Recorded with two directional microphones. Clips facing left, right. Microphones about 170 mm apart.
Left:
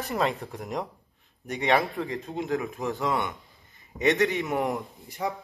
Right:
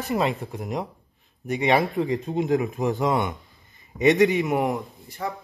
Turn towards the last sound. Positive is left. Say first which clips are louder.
# even
turn(degrees=10)  # may be behind; listen again after turning